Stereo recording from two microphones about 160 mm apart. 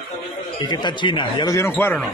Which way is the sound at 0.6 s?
30° left (ahead or behind).